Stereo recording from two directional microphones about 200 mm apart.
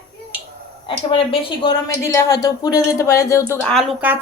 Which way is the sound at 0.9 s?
25° left (ahead or behind).